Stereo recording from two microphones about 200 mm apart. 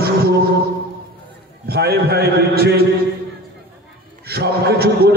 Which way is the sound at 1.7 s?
50° right (ahead or behind).